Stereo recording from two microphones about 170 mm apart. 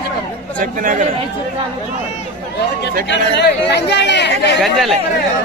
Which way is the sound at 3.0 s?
85° left.